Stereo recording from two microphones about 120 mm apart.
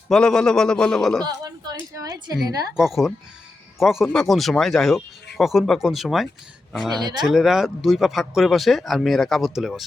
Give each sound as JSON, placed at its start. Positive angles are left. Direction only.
{"t": 0.1, "sound": "speech", "side_deg": 5}
{"t": 1.2, "sound": "a sound", "side_deg": -35}
{"t": 1.9, "sound": "a woman's voice", "side_deg": -30}
{"t": 2.7, "sound": "speech", "side_deg": 0}
{"t": 7.0, "sound": "a woman's voice", "side_deg": -35}
{"t": 7.3, "sound": "speech", "side_deg": -5}